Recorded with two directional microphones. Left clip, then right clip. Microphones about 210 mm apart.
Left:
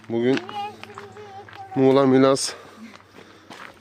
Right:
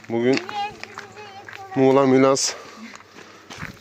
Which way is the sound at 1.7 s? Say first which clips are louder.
Right 1 dB; 10° left (ahead or behind).